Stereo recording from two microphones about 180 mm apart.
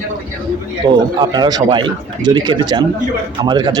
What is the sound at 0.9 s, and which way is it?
Speech, 25° right (ahead or behind).